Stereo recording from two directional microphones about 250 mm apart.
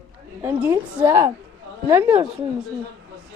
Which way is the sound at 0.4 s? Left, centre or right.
Centre.